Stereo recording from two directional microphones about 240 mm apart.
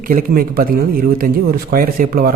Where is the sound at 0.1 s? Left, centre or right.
Right.